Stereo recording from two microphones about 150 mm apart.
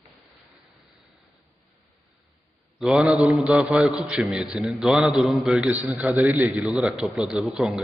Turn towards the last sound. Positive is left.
turn(degrees=-5)  # may be behind; listen again after turning